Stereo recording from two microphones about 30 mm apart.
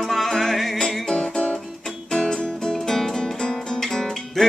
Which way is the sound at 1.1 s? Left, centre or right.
Left.